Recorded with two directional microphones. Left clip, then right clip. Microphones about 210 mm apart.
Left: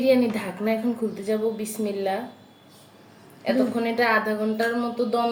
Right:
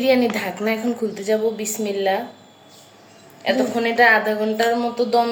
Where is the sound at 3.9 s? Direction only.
10° left (ahead or behind).